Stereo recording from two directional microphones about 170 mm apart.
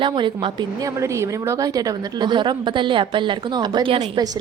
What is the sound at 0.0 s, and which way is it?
A woman's voice, 30° right (ahead or behind).